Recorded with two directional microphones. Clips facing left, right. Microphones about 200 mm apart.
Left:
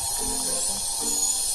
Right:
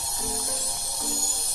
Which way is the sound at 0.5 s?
55° right (ahead or behind).